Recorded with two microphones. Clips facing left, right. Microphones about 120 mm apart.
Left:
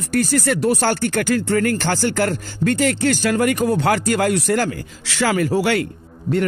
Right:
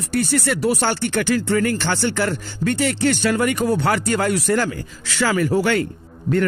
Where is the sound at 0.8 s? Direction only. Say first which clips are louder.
Left 1 dB; 40° left (ahead or behind).